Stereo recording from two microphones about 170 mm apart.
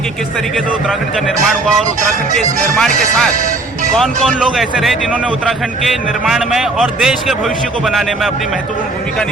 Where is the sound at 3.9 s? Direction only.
Centre (ahead or behind).